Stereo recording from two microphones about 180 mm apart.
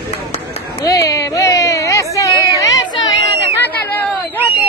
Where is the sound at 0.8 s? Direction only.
20° left (ahead or behind).